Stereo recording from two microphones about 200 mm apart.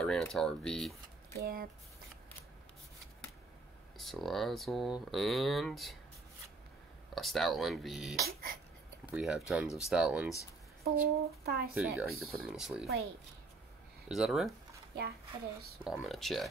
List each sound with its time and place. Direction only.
0.0 s speech: 5° left (ahead or behind)
1.4 s speech: 45° right (ahead or behind)
4.0 s speech: centre (ahead or behind)
7.2 s speech: centre (ahead or behind)
8.2 s speech: 45° right (ahead or behind)
9.1 s speech: 5° right (ahead or behind)
10.8 s speech: 50° right (ahead or behind)
11.7 s speech: 5° right (ahead or behind)
14.0 s speech: centre (ahead or behind)
15.8 s speech: centre (ahead or behind)